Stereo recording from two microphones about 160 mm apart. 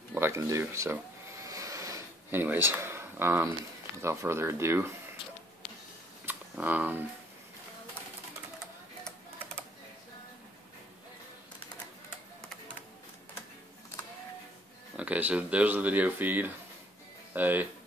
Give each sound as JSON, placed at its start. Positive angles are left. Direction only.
{"t": 0.1, "sound": "a sound", "side_deg": -15}
{"t": 4.0, "sound": "speech", "side_deg": -15}
{"t": 6.2, "sound": "camera", "side_deg": -10}
{"t": 15.0, "sound": "speech", "side_deg": -10}